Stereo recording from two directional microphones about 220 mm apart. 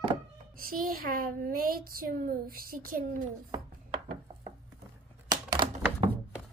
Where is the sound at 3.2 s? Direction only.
20° right (ahead or behind).